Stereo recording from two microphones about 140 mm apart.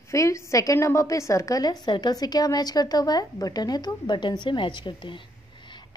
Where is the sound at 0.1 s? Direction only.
20° left (ahead or behind).